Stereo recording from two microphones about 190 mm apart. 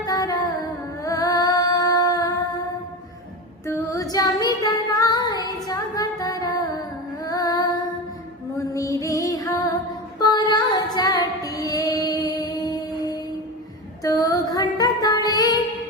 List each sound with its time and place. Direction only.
0.0 s music: 20° left (ahead or behind)
1.0 s female singing: 20° left (ahead or behind)
3.7 s female singing: 15° left (ahead or behind)
8.5 s music: 15° left (ahead or behind)
14.0 s female singing: 20° left (ahead or behind)